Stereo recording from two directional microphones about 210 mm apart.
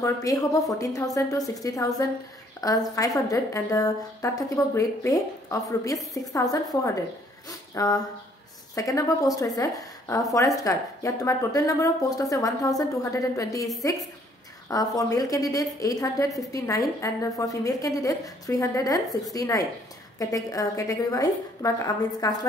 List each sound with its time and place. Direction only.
0.0 s a woman's voice: 15° left (ahead or behind)
14.7 s a woman's voice: 15° left (ahead or behind)